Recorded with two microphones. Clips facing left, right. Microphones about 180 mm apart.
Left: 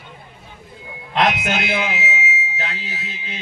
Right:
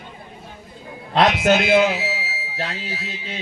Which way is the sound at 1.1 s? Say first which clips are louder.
Right 4 dB; 35° right (ahead or behind).